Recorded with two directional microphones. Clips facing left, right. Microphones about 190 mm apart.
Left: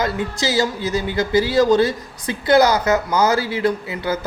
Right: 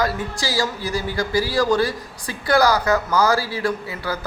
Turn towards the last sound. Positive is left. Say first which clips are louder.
# left 4 dB
turn(degrees=20)  # may be behind; listen again after turning